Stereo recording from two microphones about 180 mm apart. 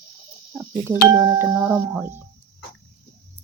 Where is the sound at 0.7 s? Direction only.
20° right (ahead or behind).